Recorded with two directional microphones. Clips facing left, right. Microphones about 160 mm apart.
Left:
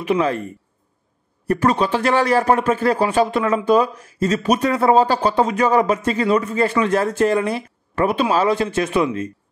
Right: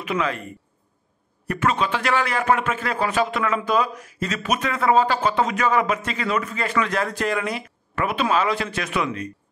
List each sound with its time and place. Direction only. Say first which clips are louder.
0.0 s a man's voice: left 6 dB; 30° left (ahead or behind)
1.5 s a man's voice: left 5 dB; 35° left (ahead or behind)